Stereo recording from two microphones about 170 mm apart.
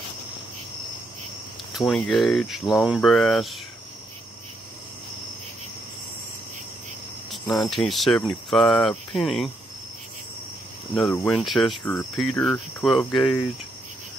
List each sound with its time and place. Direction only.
1.9 s speech: 5° left (ahead or behind)
7.2 s cricket: centre (ahead or behind)
8.5 s speech: centre (ahead or behind)
11.0 s speech: 5° left (ahead or behind)